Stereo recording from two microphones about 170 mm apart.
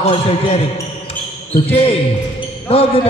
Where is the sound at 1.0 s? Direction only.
35° left (ahead or behind).